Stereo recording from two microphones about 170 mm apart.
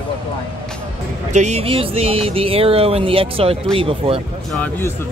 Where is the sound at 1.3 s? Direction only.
40° right (ahead or behind).